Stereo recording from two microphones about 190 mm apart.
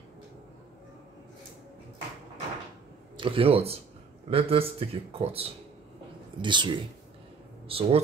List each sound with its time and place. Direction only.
3.2 s speech: 30° right (ahead or behind)